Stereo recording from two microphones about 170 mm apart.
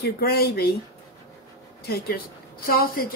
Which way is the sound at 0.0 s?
65° left (ahead or behind).